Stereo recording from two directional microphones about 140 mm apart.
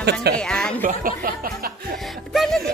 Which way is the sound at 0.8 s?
85° right.